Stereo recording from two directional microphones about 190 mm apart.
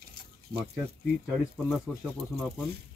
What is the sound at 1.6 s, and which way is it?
Speech, 5° right (ahead or behind).